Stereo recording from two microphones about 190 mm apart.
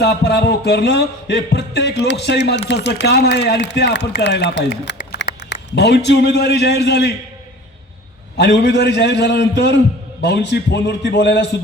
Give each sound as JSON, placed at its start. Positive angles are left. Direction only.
{"t": 0.0, "sound": "speech", "side_deg": 60}
{"t": 8.4, "sound": "speech", "side_deg": 65}